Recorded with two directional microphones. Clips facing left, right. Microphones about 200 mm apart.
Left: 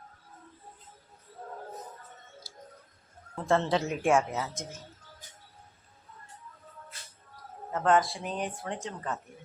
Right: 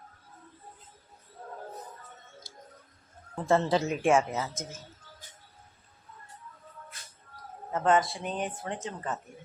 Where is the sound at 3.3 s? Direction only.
5° right (ahead or behind).